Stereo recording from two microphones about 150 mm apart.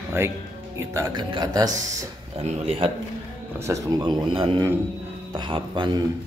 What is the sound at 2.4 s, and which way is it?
Speech, 45° right (ahead or behind).